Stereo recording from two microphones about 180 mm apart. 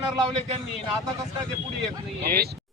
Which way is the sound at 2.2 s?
55° right (ahead or behind).